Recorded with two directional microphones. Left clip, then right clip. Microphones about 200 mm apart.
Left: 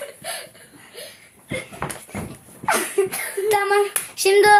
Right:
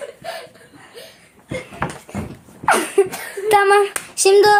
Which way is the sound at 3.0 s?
55° right (ahead or behind).